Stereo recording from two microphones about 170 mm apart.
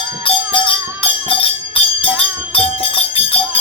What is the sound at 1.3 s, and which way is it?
Music, 35° left (ahead or behind).